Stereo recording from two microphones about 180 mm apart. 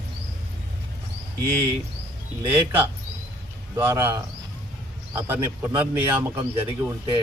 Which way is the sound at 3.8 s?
10° right (ahead or behind).